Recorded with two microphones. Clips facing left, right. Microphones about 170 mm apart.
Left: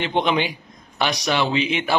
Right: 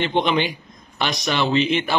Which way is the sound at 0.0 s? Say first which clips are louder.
Right 1 dB; 10° left (ahead or behind).